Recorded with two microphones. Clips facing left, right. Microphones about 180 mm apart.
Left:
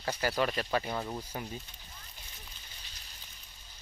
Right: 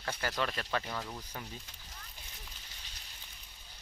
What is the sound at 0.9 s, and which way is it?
Speech, 25° left (ahead or behind).